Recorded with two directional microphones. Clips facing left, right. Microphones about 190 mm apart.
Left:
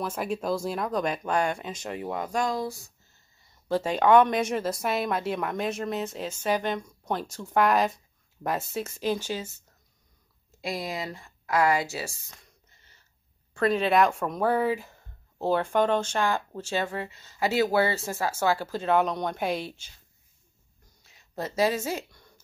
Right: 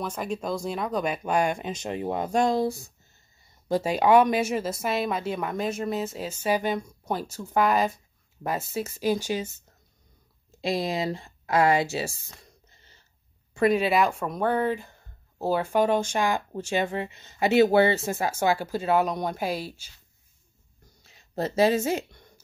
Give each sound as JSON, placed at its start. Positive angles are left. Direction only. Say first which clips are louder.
{"t": 0.0, "sound": "speech", "louder": "left 1 dB", "side_deg": 5}
{"t": 3.6, "sound": "speech", "louder": "right 1 dB", "side_deg": -10}
{"t": 10.6, "sound": "speech", "louder": "right 6 dB", "side_deg": -25}
{"t": 13.5, "sound": "speech", "louder": "right 2 dB", "side_deg": -10}
{"t": 21.0, "sound": "a sound", "louder": "right 5 dB", "side_deg": -30}